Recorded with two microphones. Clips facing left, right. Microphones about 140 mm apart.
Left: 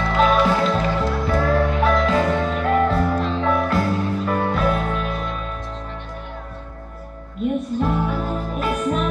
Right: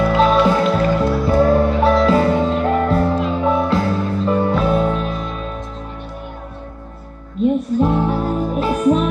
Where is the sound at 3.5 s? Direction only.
25° right (ahead or behind).